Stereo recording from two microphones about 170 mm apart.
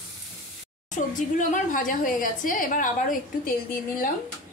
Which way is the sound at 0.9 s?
50° left (ahead or behind).